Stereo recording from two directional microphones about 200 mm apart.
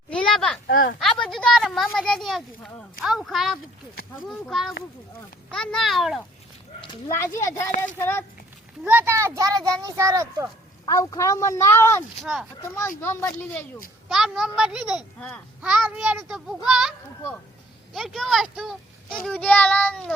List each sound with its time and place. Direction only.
0.1 s a sound: 5° left (ahead or behind)
0.7 s a sound: 45° left (ahead or behind)
1.2 s a sound: 5° left (ahead or behind)
4.3 s a child's voice: centre (ahead or behind)
7.1 s speech: 10° left (ahead or behind)
8.8 s a child's voice: 10° right (ahead or behind)
10.8 s speech: 15° left (ahead or behind)
12.2 s a child's voice: centre (ahead or behind)
13.0 s speech: 10° left (ahead or behind)
14.1 s a child's voice: centre (ahead or behind)
17.9 s a child's voice: centre (ahead or behind)